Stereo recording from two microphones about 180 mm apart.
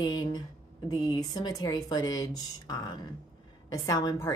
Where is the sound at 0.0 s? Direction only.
20° left (ahead or behind).